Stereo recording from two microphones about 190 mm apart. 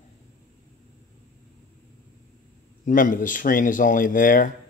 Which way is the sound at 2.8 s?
45° left (ahead or behind).